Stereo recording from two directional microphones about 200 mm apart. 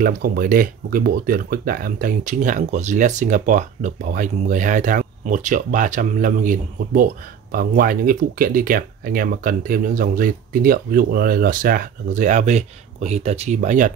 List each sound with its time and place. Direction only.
0.0 s speech: 45° right (ahead or behind)